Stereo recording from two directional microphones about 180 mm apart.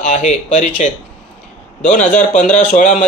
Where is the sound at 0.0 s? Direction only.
40° left (ahead or behind).